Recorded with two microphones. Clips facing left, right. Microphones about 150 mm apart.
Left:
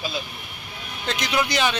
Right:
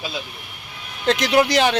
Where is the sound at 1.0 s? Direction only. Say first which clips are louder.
Right 9 dB; 90° right.